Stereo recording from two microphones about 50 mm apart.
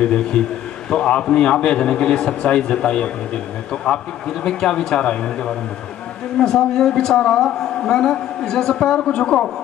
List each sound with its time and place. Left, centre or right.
0.0 s a man's voice: centre